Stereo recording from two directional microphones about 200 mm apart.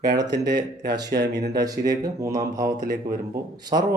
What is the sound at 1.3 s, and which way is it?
Speech, 20° right (ahead or behind).